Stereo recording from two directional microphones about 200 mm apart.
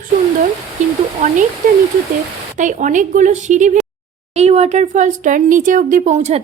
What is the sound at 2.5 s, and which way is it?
A woman's voice, 40° right (ahead or behind).